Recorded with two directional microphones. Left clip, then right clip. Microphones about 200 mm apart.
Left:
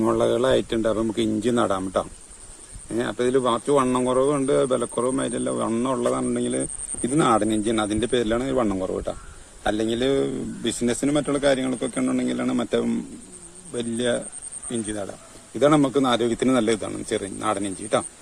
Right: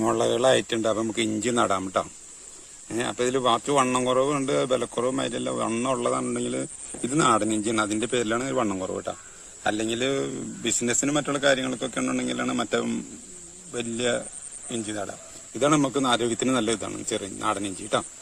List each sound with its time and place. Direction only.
0.0 s a man's voice: 35° right (ahead or behind)